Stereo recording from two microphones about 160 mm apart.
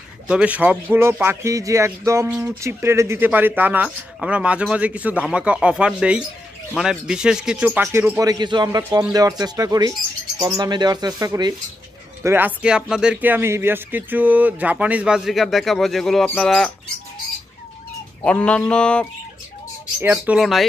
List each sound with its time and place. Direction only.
0.3 s speech: 10° right (ahead or behind)
8.2 s speech: 25° right (ahead or behind); by 16.7 s 5° left (ahead or behind)
18.2 s a sound: 5° left (ahead or behind)
20.0 s speech: 5° right (ahead or behind)